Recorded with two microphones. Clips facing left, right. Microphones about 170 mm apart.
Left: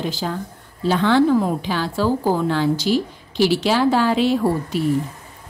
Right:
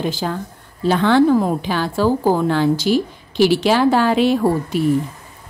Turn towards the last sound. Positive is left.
turn(degrees=-55)  # may be behind; listen again after turning